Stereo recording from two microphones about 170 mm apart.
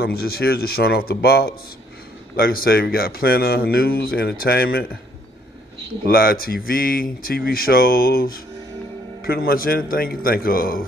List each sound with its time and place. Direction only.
0.0 s speech: 65° left (ahead or behind)
6.0 s speech: 60° left (ahead or behind)